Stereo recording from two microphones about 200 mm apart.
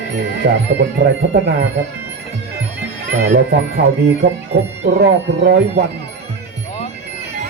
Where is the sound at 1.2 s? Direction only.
55° right (ahead or behind).